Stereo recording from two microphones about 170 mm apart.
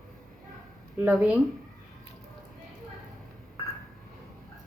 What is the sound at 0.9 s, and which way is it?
Speech, 10° right (ahead or behind).